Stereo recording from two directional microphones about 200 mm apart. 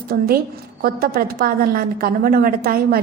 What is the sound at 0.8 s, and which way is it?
A woman's voice, 50° right (ahead or behind).